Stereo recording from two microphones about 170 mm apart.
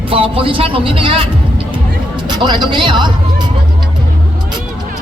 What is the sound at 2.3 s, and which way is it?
Speech, 25° right (ahead or behind).